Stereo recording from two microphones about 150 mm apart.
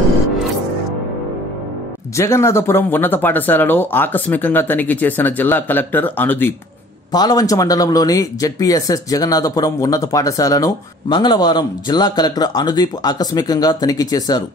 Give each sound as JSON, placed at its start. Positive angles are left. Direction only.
{"t": 2.1, "sound": "speech", "side_deg": 20}
{"t": 7.1, "sound": "speech", "side_deg": 25}